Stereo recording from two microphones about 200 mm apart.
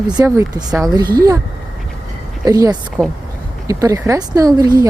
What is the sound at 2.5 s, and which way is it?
Speech, 15° right (ahead or behind).